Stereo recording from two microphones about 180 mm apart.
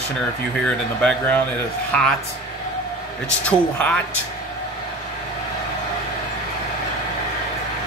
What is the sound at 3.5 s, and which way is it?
Speech, 5° left (ahead or behind).